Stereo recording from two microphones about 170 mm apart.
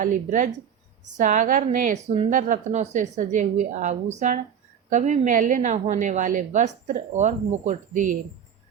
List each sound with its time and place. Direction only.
0.0 s a woman's voice: 50° right (ahead or behind)